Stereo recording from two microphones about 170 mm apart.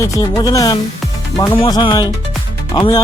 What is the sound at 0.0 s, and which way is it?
Speech, 25° left (ahead or behind).